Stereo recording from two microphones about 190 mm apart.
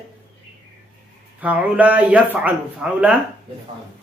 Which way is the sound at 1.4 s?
10° right (ahead or behind).